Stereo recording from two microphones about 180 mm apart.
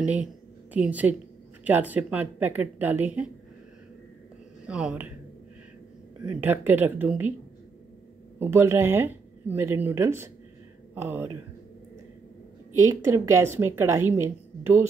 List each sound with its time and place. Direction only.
0.0 s speech: 5° right (ahead or behind)
4.6 s speech: 5° right (ahead or behind)
6.4 s speech: 10° right (ahead or behind)
8.4 s speech: 15° right (ahead or behind)
13.1 s speech: 15° right (ahead or behind)